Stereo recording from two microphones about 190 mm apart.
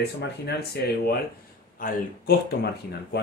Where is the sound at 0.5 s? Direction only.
55° left (ahead or behind).